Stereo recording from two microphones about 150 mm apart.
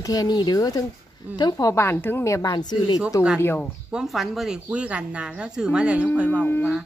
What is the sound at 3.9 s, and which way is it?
Speech, centre (ahead or behind).